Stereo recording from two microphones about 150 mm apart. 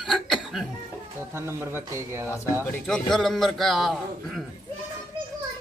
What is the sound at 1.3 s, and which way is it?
Speech, 15° right (ahead or behind).